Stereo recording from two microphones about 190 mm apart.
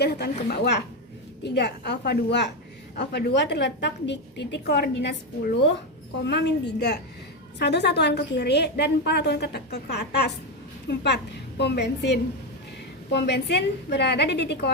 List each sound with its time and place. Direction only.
0.0 s a woman's voice: 60° left (ahead or behind)